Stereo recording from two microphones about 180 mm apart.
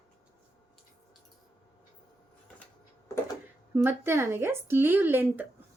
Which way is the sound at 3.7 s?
15° right (ahead or behind).